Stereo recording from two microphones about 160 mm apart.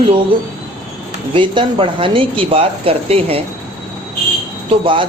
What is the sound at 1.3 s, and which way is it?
Speech, 30° right (ahead or behind).